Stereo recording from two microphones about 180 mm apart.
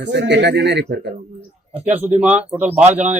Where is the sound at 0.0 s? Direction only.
75° right (ahead or behind).